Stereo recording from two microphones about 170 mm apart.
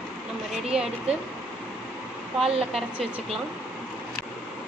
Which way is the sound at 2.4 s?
35° right (ahead or behind).